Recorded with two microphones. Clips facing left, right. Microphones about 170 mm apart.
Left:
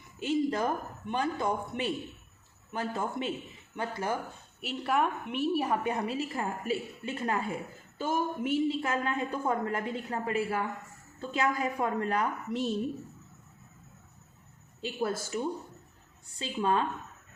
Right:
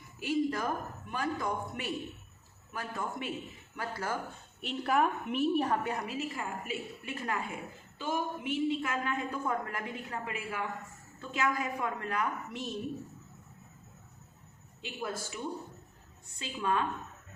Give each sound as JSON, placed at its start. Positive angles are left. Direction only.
{"t": 0.2, "sound": "a woman's voice", "side_deg": 25}
{"t": 4.6, "sound": "a woman's voice", "side_deg": 0}
{"t": 5.8, "sound": "a woman's voice", "side_deg": 30}
{"t": 7.9, "sound": "speech", "side_deg": 45}
{"t": 8.9, "sound": "a woman's voice", "side_deg": 30}
{"t": 14.8, "sound": "a woman's voice", "side_deg": 35}
{"t": 16.4, "sound": "a woman's voice", "side_deg": 30}